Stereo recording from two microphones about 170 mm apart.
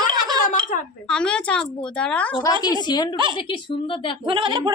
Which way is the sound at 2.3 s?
20° left (ahead or behind).